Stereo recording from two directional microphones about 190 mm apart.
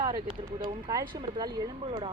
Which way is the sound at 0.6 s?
20° right (ahead or behind).